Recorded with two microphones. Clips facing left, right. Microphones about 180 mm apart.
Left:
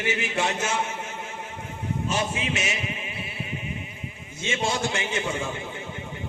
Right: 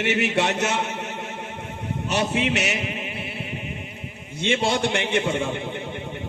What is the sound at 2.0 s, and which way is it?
Music, 70° right (ahead or behind).